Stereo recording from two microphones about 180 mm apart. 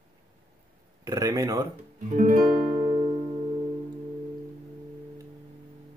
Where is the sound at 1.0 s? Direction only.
20° right (ahead or behind).